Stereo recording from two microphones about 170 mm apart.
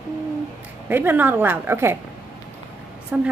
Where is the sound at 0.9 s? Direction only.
10° right (ahead or behind).